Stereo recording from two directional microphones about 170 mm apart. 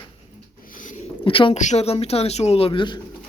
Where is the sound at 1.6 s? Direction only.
40° left (ahead or behind); by 3.0 s 25° left (ahead or behind).